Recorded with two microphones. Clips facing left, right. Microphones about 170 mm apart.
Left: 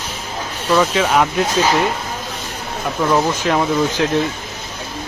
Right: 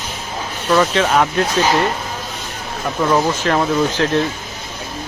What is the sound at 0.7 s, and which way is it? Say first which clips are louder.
Speech: even; centre (ahead or behind).